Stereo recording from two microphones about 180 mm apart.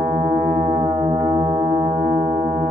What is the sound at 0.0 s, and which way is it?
Foghorn, 45° right (ahead or behind).